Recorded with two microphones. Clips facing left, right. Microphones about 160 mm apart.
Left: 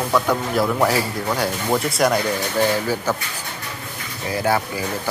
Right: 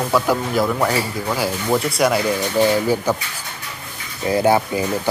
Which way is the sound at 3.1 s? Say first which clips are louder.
Right 3 dB; 15° right (ahead or behind).